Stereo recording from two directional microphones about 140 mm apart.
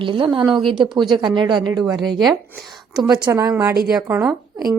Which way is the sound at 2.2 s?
Centre (ahead or behind).